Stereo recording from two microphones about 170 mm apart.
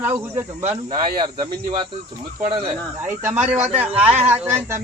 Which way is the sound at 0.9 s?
25° right (ahead or behind).